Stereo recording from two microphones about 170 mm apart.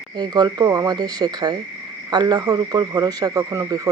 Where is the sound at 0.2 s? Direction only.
25° right (ahead or behind).